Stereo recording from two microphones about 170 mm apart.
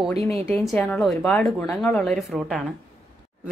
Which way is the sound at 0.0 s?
Centre (ahead or behind).